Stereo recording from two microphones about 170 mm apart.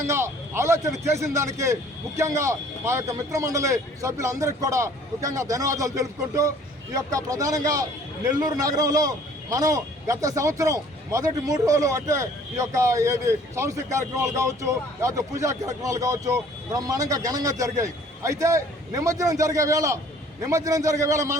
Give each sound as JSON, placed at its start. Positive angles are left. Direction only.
{"t": 0.0, "sound": "a man's voice", "side_deg": -15}